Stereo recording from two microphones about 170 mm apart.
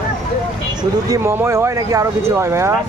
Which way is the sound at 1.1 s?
15° right (ahead or behind).